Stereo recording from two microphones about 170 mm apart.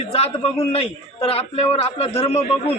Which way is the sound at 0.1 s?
35° left (ahead or behind).